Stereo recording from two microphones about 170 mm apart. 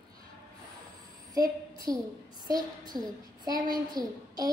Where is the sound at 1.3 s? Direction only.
20° right (ahead or behind).